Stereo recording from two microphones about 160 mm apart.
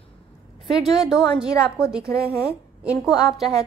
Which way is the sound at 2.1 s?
20° left (ahead or behind).